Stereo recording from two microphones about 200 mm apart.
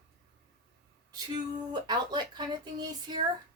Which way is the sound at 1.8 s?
20° right (ahead or behind).